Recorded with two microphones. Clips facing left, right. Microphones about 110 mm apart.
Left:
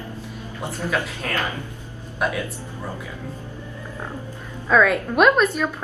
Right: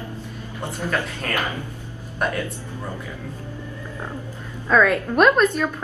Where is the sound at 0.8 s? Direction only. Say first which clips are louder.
Even; 15° left (ahead or behind).